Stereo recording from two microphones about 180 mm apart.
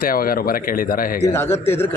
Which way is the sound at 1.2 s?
15° left (ahead or behind).